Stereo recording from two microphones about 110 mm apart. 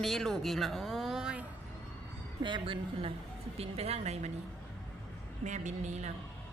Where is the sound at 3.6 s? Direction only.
70° right (ahead or behind).